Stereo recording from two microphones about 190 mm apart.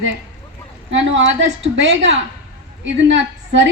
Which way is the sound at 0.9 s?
75° right (ahead or behind).